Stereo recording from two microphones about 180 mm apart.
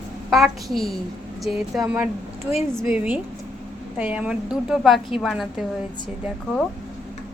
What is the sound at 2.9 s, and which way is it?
A woman's voice, 10° right (ahead or behind).